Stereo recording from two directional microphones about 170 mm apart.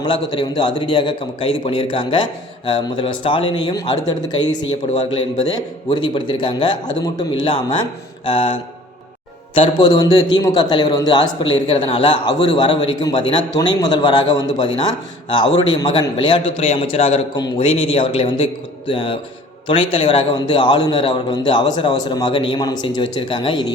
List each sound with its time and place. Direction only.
0.3 s a man's voice: 30° left (ahead or behind)
9.6 s a man's voice: 25° left (ahead or behind)